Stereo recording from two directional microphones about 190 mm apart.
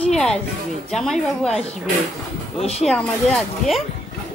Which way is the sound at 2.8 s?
Centre (ahead or behind).